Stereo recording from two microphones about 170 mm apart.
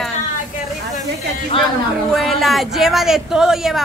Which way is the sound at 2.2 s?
Centre (ahead or behind).